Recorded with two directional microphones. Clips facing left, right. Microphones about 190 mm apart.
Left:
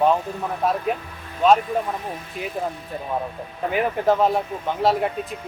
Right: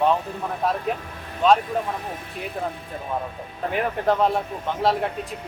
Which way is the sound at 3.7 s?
5° left (ahead or behind).